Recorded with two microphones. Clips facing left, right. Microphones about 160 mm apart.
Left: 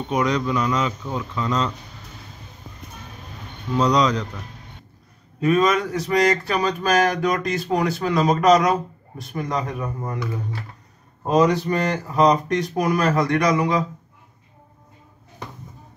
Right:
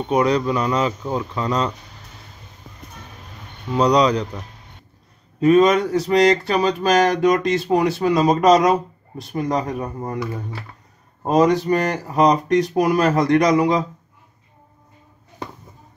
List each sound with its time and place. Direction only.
0.1 s speech: 30° right (ahead or behind)
5.4 s speech: 30° right (ahead or behind)
11.2 s speech: 35° right (ahead or behind)